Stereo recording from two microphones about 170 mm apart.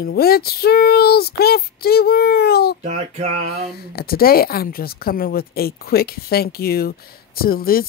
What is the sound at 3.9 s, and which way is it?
Speech, 60° left (ahead or behind).